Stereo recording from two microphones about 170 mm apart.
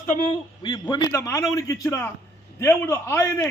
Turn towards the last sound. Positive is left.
turn(degrees=15)  # may be behind; listen again after turning